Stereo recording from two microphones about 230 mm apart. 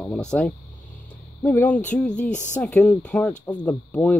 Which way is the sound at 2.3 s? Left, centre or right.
Left.